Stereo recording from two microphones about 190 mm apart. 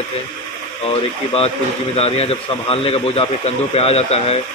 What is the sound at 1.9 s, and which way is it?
Speech, 30° left (ahead or behind).